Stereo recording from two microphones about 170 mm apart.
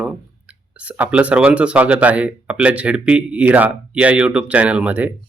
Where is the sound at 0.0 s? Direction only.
5° right (ahead or behind).